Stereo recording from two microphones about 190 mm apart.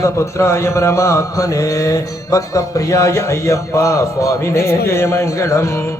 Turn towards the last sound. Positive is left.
turn(degrees=15)  # may be behind; listen again after turning